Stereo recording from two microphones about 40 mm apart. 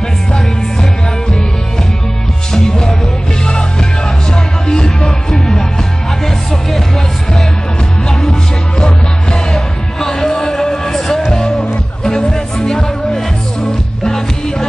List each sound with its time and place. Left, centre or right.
2.5 s music: centre
4.6 s music: centre
5.3 s music: centre
8.1 s music: centre